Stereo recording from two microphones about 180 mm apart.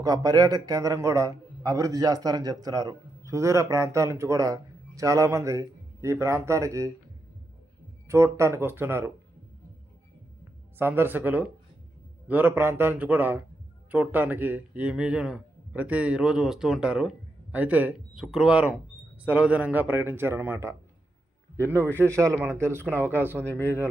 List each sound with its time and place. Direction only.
0.0 s a man's voice: 20° right (ahead or behind)
8.0 s a man's voice: 15° right (ahead or behind)
10.8 s a man's voice: 10° right (ahead or behind)
22.8 s speech: 10° left (ahead or behind)